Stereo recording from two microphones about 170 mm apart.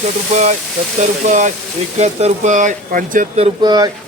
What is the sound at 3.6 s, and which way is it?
Speech, 25° right (ahead or behind).